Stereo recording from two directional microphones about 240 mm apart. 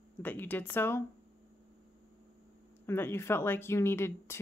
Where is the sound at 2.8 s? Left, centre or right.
Centre.